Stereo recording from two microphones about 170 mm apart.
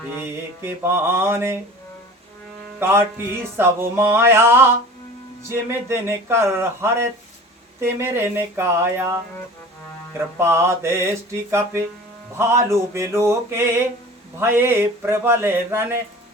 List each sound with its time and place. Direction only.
0.2 s speech: 15° right (ahead or behind)
2.7 s music: 15° right (ahead or behind)
3.6 s speech: 15° right (ahead or behind)
10.3 s speech: 15° right (ahead or behind)